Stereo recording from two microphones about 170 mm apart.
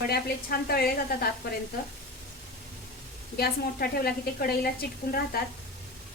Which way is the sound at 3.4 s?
65° left (ahead or behind).